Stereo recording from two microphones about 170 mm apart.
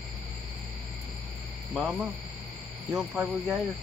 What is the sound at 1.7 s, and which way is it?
Speech, centre (ahead or behind).